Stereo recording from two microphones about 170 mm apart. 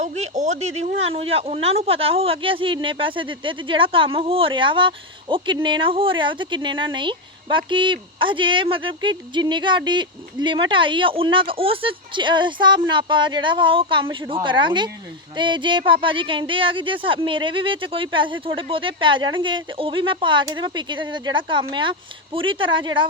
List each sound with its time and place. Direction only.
0.0 s speech: 45° right (ahead or behind)